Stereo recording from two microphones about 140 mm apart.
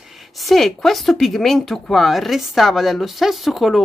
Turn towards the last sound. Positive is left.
turn(degrees=0)  # may be behind; listen again after turning